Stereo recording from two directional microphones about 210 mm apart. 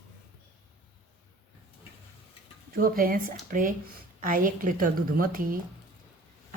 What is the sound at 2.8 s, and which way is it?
A woman's voice, 45° right (ahead or behind).